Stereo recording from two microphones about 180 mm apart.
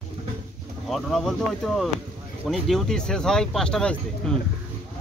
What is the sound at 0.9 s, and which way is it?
A man's voice, centre (ahead or behind).